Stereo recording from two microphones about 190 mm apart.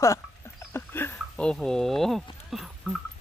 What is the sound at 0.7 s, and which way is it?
Dog, 10° left (ahead or behind).